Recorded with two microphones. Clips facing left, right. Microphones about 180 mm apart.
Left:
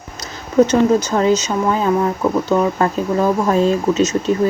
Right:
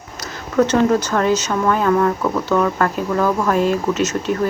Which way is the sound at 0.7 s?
15° left (ahead or behind).